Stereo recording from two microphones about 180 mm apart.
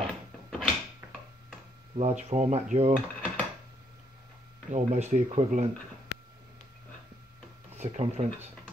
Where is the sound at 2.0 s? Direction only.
35° right (ahead or behind).